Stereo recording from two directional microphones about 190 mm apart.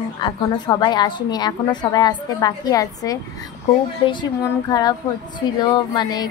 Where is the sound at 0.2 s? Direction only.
25° left (ahead or behind).